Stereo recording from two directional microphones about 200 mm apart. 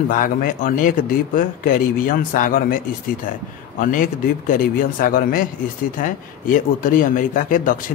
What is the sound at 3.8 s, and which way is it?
A man's voice, 40° left (ahead or behind).